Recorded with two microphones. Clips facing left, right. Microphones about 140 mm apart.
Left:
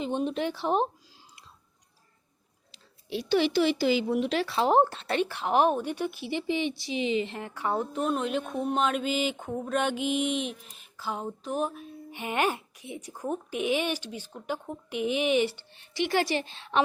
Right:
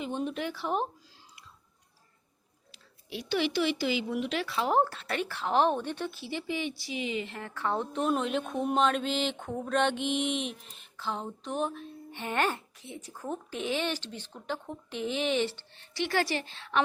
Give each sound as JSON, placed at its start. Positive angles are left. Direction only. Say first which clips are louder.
{"t": 0.0, "sound": "speech", "louder": "left 4 dB", "side_deg": 25}
{"t": 2.7, "sound": "speech", "louder": "left 6 dB", "side_deg": 30}